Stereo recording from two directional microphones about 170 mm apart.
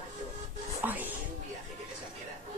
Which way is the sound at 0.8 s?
10° right (ahead or behind).